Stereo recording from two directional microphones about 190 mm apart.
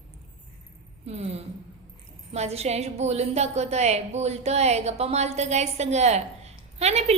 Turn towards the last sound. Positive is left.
turn(degrees=-35)  # may be behind; listen again after turning